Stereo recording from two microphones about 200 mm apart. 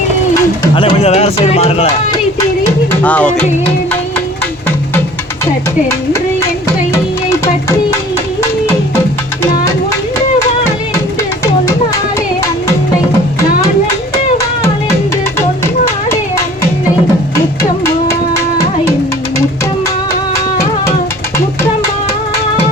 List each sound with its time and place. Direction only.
0.8 s speech: 30° left (ahead or behind)
2.9 s music: 5° left (ahead or behind)
15.4 s music: 10° left (ahead or behind)